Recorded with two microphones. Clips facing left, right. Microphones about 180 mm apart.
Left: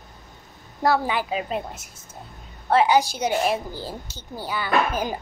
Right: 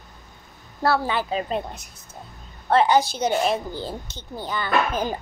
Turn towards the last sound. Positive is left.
turn(degrees=10)  # may be behind; listen again after turning